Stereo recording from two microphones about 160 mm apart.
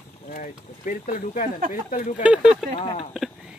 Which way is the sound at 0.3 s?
55° left (ahead or behind).